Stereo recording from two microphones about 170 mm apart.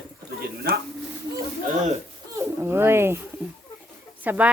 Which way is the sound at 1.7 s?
45° right (ahead or behind).